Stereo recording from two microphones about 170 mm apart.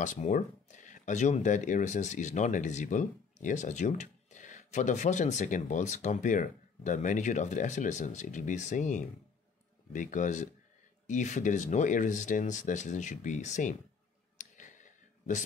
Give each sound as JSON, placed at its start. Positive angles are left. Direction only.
{"t": 0.0, "sound": "speech", "side_deg": 50}
{"t": 14.4, "sound": "clicking", "side_deg": 45}